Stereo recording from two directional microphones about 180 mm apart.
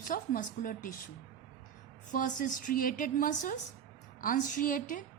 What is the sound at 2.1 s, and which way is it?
A woman's voice, 50° left (ahead or behind).